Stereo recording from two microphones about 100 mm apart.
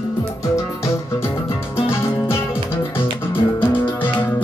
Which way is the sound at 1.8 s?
25° left (ahead or behind).